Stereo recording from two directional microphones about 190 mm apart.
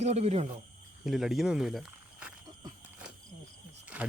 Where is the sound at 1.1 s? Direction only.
Centre (ahead or behind).